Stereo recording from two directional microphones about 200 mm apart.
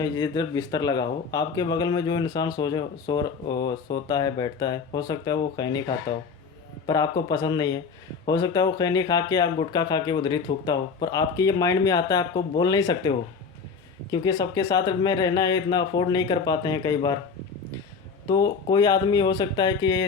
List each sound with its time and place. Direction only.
0.0 s speech: 20° left (ahead or behind)
18.3 s speech: 20° left (ahead or behind)